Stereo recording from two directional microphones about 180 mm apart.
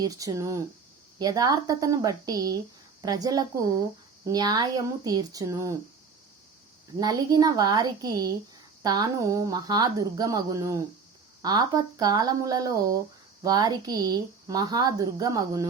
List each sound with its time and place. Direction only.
0.0 s speech: 20° right (ahead or behind)
7.0 s speech: 20° right (ahead or behind)